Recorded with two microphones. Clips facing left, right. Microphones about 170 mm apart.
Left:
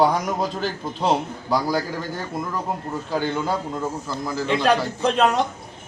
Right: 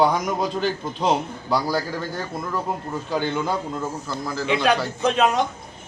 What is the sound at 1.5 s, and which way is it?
Speech, 15° left (ahead or behind).